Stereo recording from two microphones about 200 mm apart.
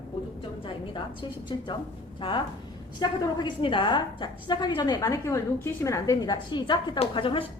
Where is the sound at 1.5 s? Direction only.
20° left (ahead or behind).